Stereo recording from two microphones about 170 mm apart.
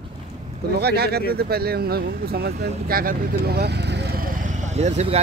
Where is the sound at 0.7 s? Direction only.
70° right (ahead or behind).